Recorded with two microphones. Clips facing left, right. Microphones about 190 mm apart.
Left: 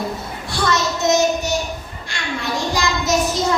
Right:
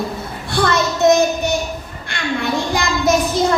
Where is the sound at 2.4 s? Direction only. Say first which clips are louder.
Right 1 dB; 55° right (ahead or behind).